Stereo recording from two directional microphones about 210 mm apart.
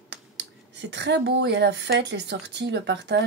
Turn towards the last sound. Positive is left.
turn(degrees=-55)  # may be behind; listen again after turning